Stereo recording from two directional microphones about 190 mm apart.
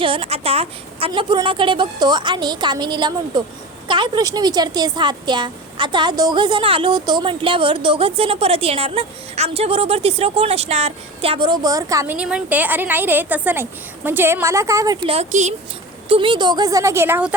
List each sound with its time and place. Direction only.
0.0 s a woman's voice: 30° right (ahead or behind)
15.0 s speech: 35° right (ahead or behind)
16.0 s a woman's voice: 25° right (ahead or behind); by 17.3 s 10° right (ahead or behind)